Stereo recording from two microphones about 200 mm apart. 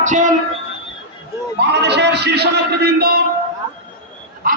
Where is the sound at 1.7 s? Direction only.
55° right (ahead or behind).